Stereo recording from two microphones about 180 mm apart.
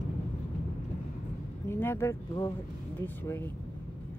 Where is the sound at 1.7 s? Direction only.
15° left (ahead or behind).